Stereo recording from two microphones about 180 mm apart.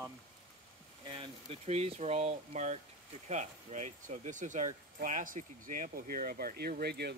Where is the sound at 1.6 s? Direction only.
35° right (ahead or behind); by 7.1 s 65° right (ahead or behind).